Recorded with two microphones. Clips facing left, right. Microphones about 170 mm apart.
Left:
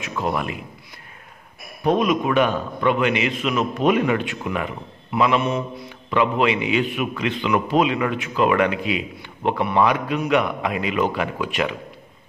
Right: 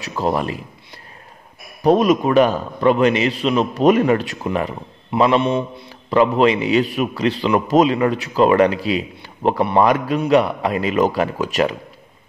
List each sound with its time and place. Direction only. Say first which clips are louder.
0.0 s a man's voice: right 4 dB; 35° right (ahead or behind)
1.8 s a man's voice: right 5 dB; 40° right (ahead or behind)